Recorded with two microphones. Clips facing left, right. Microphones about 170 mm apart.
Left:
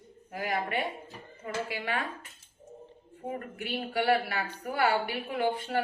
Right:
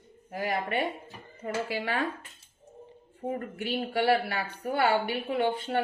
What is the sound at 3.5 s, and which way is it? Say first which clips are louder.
Speech: right 1 dB; 30° right (ahead or behind).